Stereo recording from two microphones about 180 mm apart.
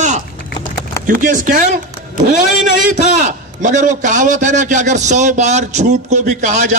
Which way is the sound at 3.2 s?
45° right (ahead or behind).